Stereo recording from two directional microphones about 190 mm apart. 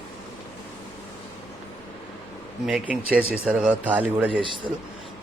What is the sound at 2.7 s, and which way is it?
Speech, 5° right (ahead or behind).